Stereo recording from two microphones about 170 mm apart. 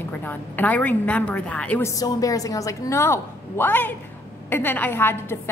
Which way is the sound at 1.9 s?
20° left (ahead or behind).